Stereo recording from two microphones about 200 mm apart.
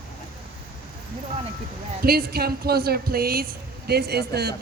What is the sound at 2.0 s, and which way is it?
A woman's voice, 50° right (ahead or behind).